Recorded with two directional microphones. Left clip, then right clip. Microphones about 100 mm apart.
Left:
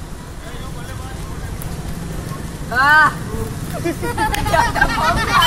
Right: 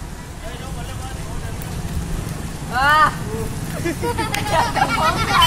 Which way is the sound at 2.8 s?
15° left (ahead or behind).